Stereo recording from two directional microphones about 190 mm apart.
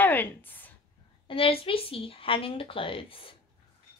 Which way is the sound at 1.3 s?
30° left (ahead or behind).